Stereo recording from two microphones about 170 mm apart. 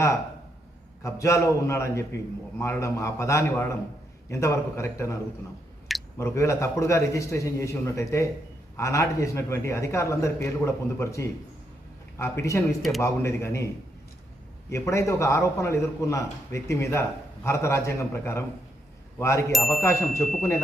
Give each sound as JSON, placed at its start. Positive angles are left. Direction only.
{"t": 1.0, "sound": "a man's voice", "side_deg": 15}
{"t": 14.7, "sound": "a man's voice", "side_deg": 15}